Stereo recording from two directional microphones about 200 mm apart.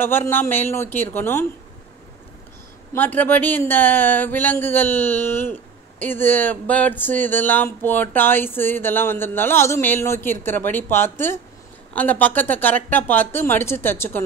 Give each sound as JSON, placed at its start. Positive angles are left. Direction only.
{"t": 0.0, "sound": "speech", "side_deg": 10}
{"t": 2.9, "sound": "speech", "side_deg": 10}